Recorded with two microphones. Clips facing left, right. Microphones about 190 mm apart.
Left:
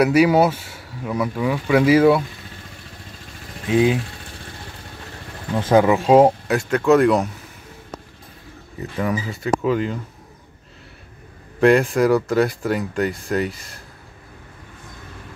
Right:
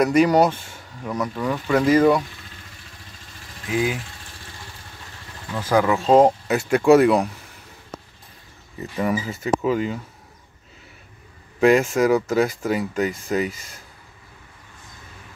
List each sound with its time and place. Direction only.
0.0 s speech: 5° left (ahead or behind)
3.6 s speech: 30° left (ahead or behind)
5.6 s speech: 25° left (ahead or behind)
6.5 s speech: 10° right (ahead or behind)
8.9 s speech: centre (ahead or behind)
11.6 s speech: centre (ahead or behind)